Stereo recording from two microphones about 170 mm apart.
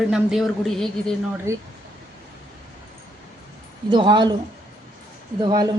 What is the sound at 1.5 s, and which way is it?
Speech, 15° right (ahead or behind).